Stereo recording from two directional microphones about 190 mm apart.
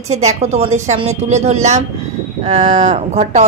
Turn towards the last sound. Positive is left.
turn(degrees=-35)  # may be behind; listen again after turning